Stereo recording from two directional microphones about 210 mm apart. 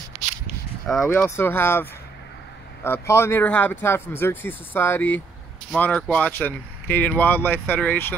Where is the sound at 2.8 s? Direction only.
10° left (ahead or behind).